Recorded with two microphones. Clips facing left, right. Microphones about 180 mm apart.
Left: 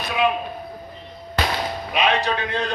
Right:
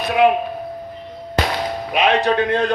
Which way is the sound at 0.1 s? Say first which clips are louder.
Right 7 dB; 55° right (ahead or behind).